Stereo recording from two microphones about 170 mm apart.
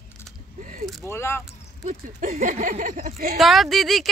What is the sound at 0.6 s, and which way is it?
Speech, 50° right (ahead or behind).